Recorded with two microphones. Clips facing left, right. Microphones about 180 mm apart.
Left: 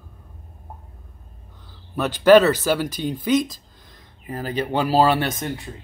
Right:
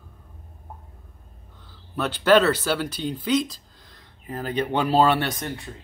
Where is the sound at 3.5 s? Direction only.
20° left (ahead or behind).